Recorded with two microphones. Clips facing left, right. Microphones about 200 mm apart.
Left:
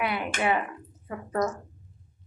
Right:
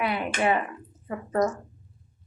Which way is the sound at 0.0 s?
5° left (ahead or behind).